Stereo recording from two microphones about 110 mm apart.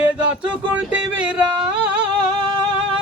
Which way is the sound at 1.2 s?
10° right (ahead or behind).